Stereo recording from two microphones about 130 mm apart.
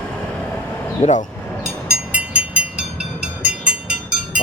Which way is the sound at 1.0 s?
60° left (ahead or behind).